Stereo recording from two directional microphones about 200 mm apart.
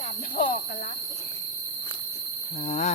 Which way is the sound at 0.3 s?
40° left (ahead or behind).